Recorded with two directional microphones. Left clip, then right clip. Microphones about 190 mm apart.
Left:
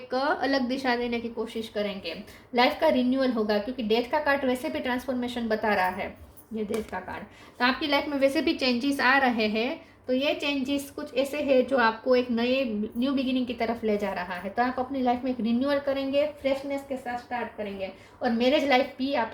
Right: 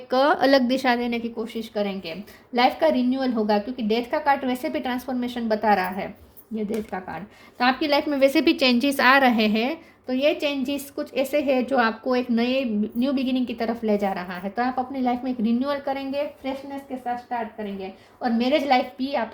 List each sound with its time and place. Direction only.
0.1 s a woman's voice: 55° right (ahead or behind)
18.2 s a woman's voice: 45° right (ahead or behind)